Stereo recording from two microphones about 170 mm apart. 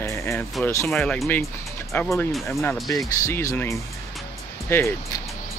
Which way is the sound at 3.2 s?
15° left (ahead or behind).